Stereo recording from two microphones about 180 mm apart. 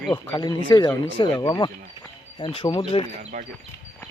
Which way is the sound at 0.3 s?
25° left (ahead or behind).